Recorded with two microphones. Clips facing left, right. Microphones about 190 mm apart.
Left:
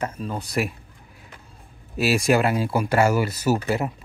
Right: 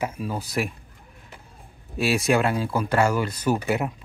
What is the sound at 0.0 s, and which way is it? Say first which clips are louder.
Speech: even; 10° right (ahead or behind).